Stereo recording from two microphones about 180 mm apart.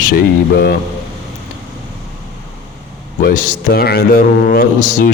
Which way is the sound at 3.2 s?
45° left (ahead or behind).